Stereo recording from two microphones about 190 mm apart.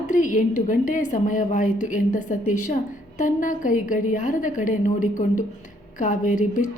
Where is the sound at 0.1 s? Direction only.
40° left (ahead or behind).